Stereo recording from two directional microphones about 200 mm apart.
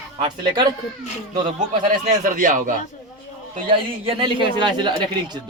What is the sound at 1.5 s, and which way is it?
A man's voice, 40° right (ahead or behind).